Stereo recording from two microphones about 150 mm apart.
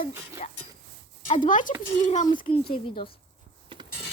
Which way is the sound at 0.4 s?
55° left (ahead or behind).